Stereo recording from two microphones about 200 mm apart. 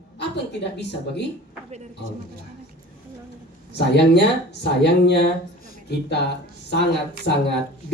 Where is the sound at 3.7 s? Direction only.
55° left (ahead or behind).